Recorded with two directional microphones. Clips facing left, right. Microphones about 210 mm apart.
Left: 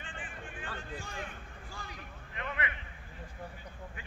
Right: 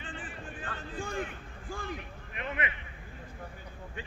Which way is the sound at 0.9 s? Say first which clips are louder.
Right 11 dB; 50° right (ahead or behind).